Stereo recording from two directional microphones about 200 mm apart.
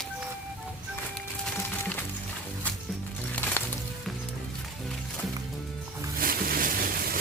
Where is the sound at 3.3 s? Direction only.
10° left (ahead or behind).